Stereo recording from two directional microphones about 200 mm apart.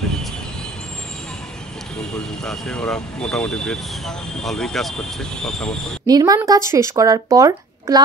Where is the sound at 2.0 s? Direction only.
5° left (ahead or behind).